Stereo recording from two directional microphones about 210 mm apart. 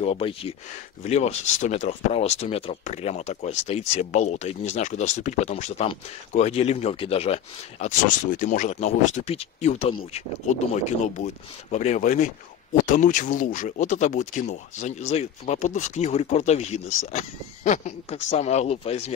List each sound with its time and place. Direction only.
0.0 s speech: 25° left (ahead or behind)
7.8 s speech: 40° left (ahead or behind)